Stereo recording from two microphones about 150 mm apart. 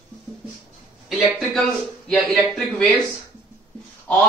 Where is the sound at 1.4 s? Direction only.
5° left (ahead or behind).